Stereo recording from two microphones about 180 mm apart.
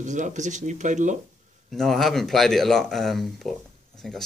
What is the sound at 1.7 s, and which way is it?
Speech, centre (ahead or behind).